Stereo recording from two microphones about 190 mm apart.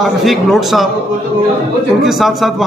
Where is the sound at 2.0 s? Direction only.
Centre (ahead or behind).